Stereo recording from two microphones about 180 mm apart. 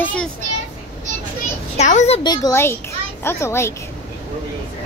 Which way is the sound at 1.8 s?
40° left (ahead or behind).